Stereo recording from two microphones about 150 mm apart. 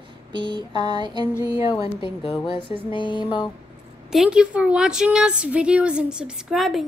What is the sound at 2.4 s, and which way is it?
Music, 35° left (ahead or behind).